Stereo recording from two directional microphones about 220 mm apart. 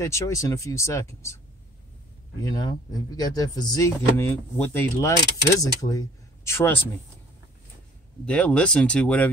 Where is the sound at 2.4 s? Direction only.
15° left (ahead or behind).